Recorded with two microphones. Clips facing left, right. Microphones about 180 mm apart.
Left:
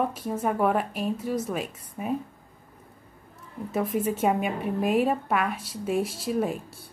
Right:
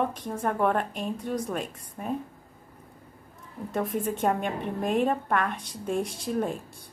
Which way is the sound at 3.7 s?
5° left (ahead or behind).